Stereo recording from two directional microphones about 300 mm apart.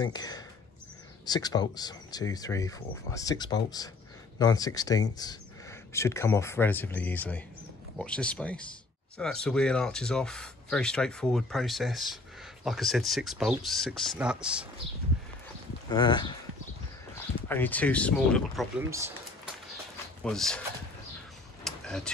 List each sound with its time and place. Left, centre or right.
0.0 s speech: centre
15.9 s speech: centre
17.5 s speech: centre
18.9 s a sound: centre
20.2 s speech: centre
21.6 s a sound: centre